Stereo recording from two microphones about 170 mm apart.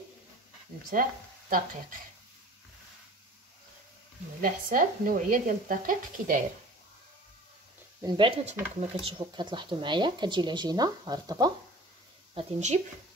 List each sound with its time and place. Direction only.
0.7 s speech: 60° right (ahead or behind)
4.4 s speech: 55° right (ahead or behind)
8.0 s speech: 30° right (ahead or behind)
12.4 s speech: 45° right (ahead or behind)